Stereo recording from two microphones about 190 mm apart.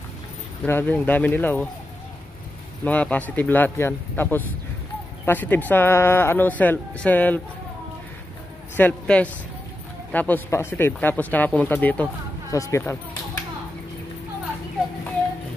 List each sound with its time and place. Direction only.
0.7 s speech: 10° left (ahead or behind)
2.8 s speech: 5° left (ahead or behind)
8.7 s speech: 5° left (ahead or behind)